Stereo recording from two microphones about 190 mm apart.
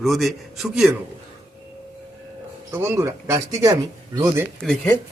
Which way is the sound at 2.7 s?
10° right (ahead or behind).